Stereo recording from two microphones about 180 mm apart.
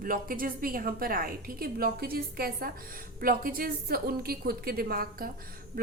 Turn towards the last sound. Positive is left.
turn(degrees=-55)  # may be behind; listen again after turning